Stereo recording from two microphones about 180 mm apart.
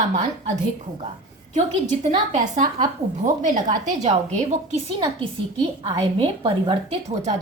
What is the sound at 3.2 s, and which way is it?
A woman's voice, 45° right (ahead or behind).